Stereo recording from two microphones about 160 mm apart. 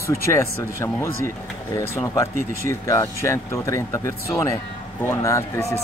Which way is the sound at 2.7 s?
20° left (ahead or behind).